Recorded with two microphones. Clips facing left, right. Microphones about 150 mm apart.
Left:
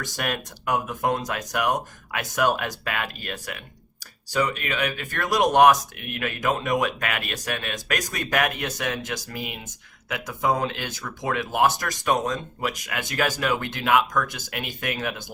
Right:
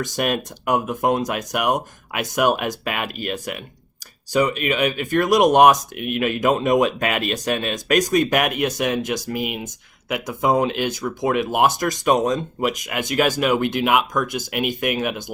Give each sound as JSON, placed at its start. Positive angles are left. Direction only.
{"t": 0.0, "sound": "speech", "side_deg": -20}